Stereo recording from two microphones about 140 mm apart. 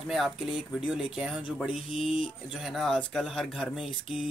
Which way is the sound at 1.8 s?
40° left (ahead or behind).